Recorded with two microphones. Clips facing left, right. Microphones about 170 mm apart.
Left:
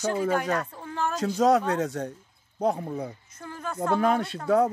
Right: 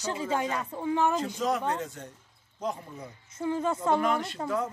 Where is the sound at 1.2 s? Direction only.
75° left (ahead or behind).